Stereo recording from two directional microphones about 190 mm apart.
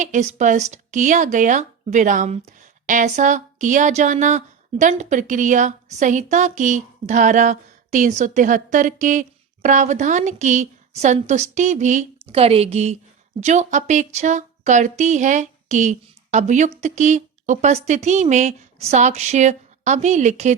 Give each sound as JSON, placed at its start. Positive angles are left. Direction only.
{"t": 0.0, "sound": "a woman's voice", "side_deg": -40}